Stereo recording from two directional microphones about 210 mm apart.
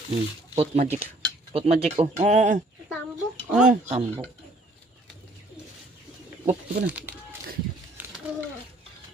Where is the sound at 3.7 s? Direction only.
30° right (ahead or behind).